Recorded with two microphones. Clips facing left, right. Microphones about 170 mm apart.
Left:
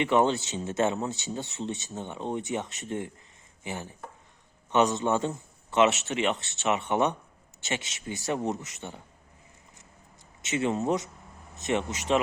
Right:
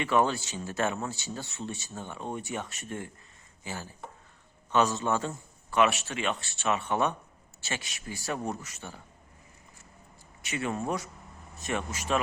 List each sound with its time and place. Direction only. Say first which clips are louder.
0.0 s speech: left 3 dB; 20° left (ahead or behind)
10.4 s speech: left 5 dB; 20° left (ahead or behind)